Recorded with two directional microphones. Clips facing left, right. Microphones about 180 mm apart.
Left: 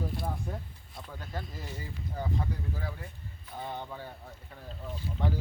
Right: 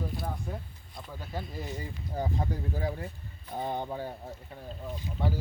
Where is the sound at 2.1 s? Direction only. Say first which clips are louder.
Right 3 dB; 35° right (ahead or behind).